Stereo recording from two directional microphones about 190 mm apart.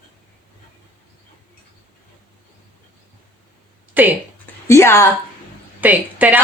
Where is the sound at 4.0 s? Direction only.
10° right (ahead or behind).